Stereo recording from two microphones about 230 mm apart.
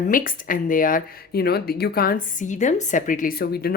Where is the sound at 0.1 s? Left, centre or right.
Left.